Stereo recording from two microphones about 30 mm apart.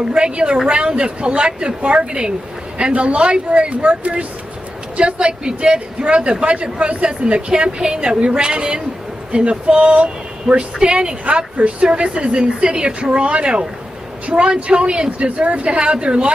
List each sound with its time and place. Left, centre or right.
0.1 s a woman's voice: right
4.9 s a woman's voice: right
9.3 s speech: right
9.7 s a woman's voice: right